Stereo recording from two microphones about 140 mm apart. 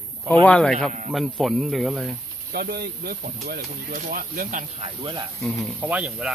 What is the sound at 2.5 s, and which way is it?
Speech, 90° right.